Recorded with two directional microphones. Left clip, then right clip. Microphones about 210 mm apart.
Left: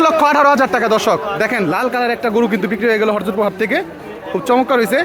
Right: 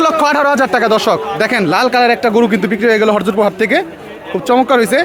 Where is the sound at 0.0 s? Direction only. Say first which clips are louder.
Even; 10° right (ahead or behind).